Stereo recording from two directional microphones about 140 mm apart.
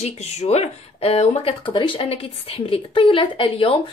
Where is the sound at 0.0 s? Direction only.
50° left (ahead or behind).